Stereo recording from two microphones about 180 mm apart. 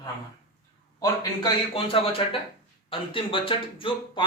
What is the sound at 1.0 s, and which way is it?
A man's voice, 20° left (ahead or behind).